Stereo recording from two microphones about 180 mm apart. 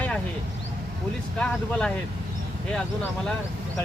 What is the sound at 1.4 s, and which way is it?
Speech, 5° left (ahead or behind).